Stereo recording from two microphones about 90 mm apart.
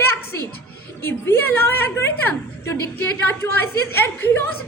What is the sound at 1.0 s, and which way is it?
Speech, 25° left (ahead or behind).